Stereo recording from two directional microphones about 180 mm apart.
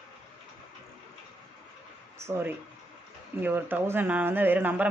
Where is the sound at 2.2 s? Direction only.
15° right (ahead or behind).